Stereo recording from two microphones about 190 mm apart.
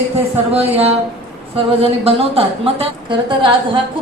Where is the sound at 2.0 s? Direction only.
30° right (ahead or behind).